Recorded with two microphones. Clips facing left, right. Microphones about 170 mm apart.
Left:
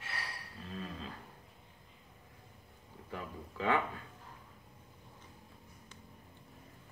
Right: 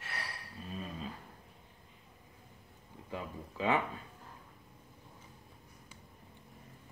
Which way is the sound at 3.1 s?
15° right (ahead or behind).